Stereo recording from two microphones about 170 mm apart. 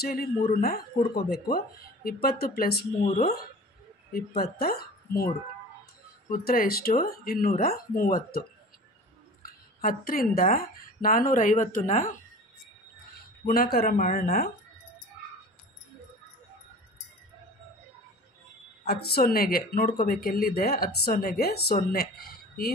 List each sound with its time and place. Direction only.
0.0 s speech: 65° left (ahead or behind)
3.0 s speech: 45° left (ahead or behind)
4.4 s speech: 60° left (ahead or behind)
6.3 s a woman's voice: 55° left (ahead or behind)
13.5 s speech: 60° left (ahead or behind)
18.9 s speech: 65° left (ahead or behind)
22.1 s a sound: 65° left (ahead or behind)